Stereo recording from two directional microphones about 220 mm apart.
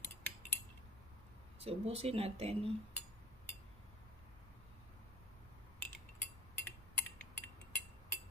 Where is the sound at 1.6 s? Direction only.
25° right (ahead or behind).